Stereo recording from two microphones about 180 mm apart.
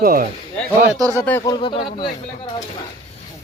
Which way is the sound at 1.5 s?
30° left (ahead or behind).